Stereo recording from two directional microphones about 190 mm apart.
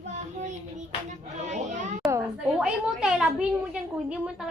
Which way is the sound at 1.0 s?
40° right (ahead or behind).